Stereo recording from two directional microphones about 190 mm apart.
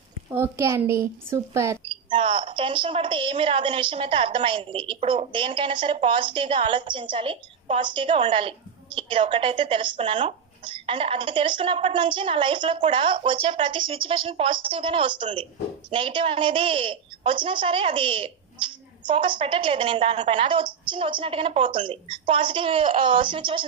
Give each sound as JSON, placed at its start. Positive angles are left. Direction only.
{"t": 0.3, "sound": "speech", "side_deg": -15}
{"t": 1.9, "sound": "a woman's voice", "side_deg": -25}